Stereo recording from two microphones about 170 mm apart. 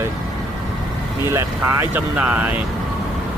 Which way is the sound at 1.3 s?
15° right (ahead or behind).